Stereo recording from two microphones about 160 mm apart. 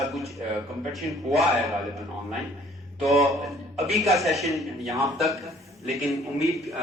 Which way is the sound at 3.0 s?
Centre (ahead or behind).